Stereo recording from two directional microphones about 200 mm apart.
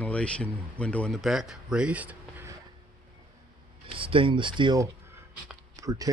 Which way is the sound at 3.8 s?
25° right (ahead or behind).